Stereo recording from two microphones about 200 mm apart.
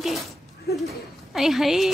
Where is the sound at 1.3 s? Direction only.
Centre (ahead or behind).